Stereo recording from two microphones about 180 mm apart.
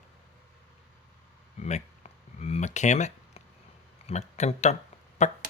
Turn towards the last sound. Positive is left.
turn(degrees=40)  # may be behind; listen again after turning